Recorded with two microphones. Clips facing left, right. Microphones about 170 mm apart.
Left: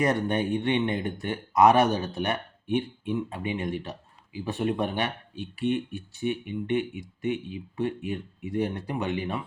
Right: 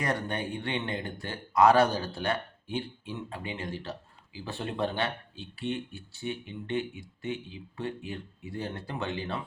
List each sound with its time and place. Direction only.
0.0 s speech: 20° left (ahead or behind)